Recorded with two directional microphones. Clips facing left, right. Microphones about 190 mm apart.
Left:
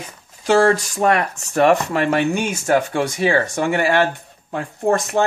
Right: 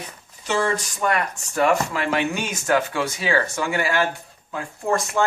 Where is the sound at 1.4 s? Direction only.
65° left (ahead or behind).